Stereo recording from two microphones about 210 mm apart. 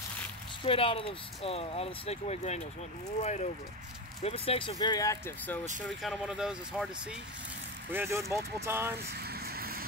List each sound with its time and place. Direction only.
0.7 s speech: 25° left (ahead or behind)
5.9 s speech: centre (ahead or behind)
9.1 s vehicle: 50° right (ahead or behind)